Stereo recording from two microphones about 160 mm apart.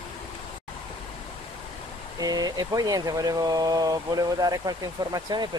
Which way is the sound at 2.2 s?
25° right (ahead or behind).